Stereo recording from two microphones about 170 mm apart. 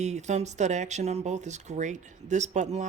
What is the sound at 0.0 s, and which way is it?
Speech, 40° right (ahead or behind).